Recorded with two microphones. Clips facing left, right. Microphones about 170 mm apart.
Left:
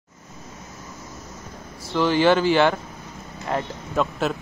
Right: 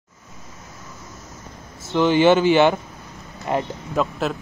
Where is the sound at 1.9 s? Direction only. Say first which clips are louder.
Right 3 dB; 20° right (ahead or behind).